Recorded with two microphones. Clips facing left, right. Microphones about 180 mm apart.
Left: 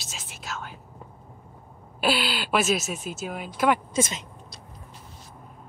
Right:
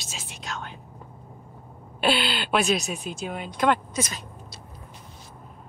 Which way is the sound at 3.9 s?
25° left (ahead or behind).